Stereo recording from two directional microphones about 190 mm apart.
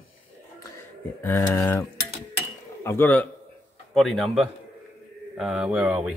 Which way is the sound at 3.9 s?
Centre (ahead or behind).